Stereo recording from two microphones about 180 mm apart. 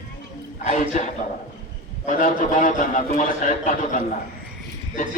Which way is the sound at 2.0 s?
50° left (ahead or behind).